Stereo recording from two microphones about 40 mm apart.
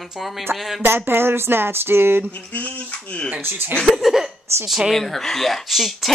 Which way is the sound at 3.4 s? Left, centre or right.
Right.